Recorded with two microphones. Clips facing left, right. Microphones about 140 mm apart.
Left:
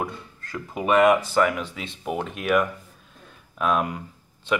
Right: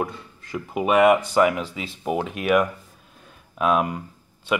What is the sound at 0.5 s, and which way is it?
Speech, 10° right (ahead or behind).